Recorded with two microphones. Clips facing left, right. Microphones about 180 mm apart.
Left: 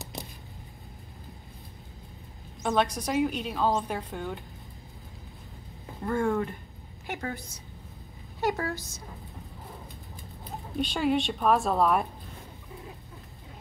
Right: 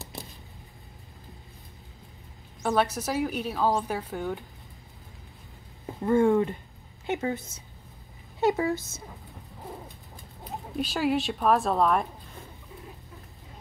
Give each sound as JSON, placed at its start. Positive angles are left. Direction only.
{"t": 2.6, "sound": "a woman's voice", "side_deg": -5}
{"t": 6.0, "sound": "a woman's voice", "side_deg": -20}
{"t": 10.8, "sound": "a woman's voice", "side_deg": -5}